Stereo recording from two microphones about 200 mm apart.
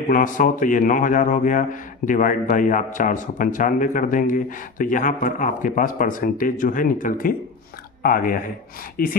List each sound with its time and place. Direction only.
0.1 s a man's voice: 40° left (ahead or behind)